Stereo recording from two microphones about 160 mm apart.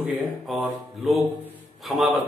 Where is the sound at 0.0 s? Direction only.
Centre (ahead or behind).